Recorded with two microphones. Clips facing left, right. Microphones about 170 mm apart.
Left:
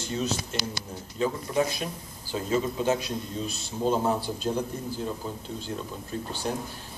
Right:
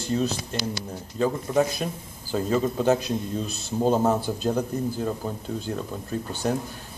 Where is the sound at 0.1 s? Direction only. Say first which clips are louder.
Right 5 dB; 35° right (ahead or behind).